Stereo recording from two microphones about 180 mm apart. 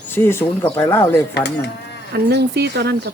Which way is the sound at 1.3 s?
70° left (ahead or behind).